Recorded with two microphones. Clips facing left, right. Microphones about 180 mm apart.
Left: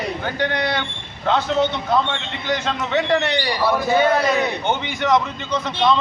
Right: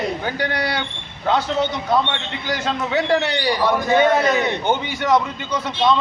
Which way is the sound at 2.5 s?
10° right (ahead or behind).